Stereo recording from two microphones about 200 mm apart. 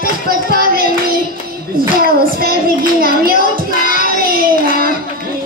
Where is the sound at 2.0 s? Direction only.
45° right (ahead or behind).